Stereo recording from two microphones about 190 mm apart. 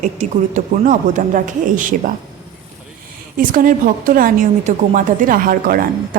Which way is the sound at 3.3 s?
45° right (ahead or behind).